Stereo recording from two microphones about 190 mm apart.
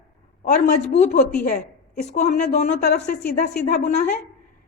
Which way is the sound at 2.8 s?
60° left (ahead or behind).